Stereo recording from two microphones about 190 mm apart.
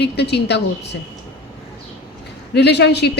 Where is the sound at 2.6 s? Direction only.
60° left (ahead or behind).